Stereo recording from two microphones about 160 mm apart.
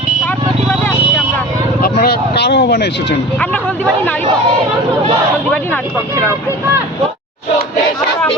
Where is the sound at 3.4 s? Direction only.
5° left (ahead or behind).